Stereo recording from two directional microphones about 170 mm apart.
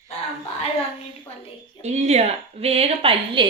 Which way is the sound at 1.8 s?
40° right (ahead or behind).